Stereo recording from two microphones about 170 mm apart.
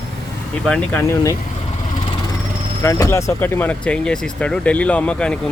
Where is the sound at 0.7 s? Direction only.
5° left (ahead or behind).